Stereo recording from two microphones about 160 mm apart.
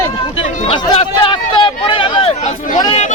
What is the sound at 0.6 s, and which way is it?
Speech, 35° left (ahead or behind).